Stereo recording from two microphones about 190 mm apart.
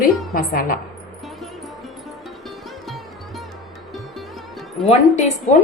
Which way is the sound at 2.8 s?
Centre (ahead or behind).